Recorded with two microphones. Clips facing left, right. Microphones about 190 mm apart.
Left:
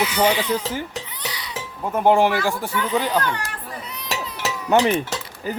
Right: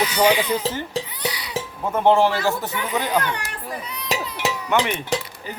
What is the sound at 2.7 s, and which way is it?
Speech, 10° right (ahead or behind).